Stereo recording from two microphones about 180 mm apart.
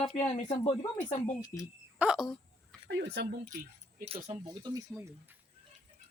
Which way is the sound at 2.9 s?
75° right (ahead or behind).